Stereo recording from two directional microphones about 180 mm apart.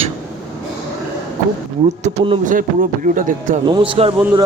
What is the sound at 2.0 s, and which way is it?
Speech, 30° right (ahead or behind).